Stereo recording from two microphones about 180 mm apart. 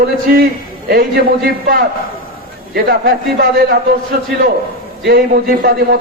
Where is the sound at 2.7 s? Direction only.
55° right (ahead or behind).